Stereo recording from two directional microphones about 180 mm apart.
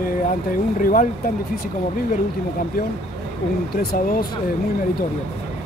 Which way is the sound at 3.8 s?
55° left (ahead or behind).